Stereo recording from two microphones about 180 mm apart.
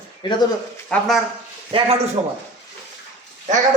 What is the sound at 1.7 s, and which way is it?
Speech, 30° right (ahead or behind).